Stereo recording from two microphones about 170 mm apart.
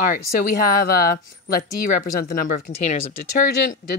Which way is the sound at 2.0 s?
55° left (ahead or behind).